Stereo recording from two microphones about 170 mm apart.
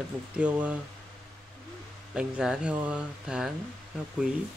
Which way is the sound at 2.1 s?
5° right (ahead or behind).